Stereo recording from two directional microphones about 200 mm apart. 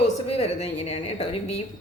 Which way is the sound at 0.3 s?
30° left (ahead or behind).